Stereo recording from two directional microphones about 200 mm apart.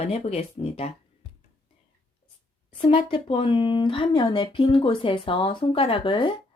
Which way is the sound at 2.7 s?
25° left (ahead or behind).